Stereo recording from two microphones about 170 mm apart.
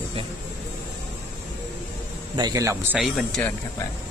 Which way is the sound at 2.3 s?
25° right (ahead or behind).